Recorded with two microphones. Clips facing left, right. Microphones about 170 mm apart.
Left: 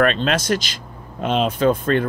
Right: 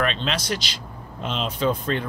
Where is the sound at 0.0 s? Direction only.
50° left (ahead or behind).